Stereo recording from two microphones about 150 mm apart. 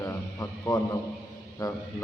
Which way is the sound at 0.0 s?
20° left (ahead or behind).